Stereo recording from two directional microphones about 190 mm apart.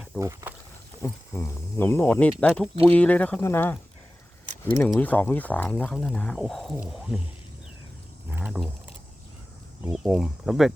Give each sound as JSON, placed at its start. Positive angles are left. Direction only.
{"t": 0.2, "sound": "speech", "side_deg": -15}
{"t": 1.0, "sound": "speech", "side_deg": 15}
{"t": 8.3, "sound": "a sound", "side_deg": -10}
{"t": 9.8, "sound": "speech", "side_deg": -5}